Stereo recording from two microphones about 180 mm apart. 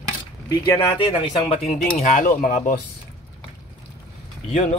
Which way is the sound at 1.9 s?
45° left (ahead or behind).